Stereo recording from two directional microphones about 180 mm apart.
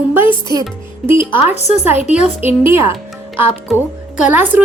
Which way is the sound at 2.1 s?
40° left (ahead or behind).